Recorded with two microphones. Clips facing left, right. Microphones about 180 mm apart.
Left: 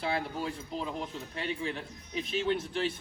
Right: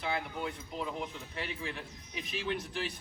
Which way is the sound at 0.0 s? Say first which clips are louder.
Left 3 dB; 30° left (ahead or behind).